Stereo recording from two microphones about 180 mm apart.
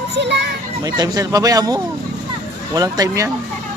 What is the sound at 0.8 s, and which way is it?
Speech, 20° right (ahead or behind).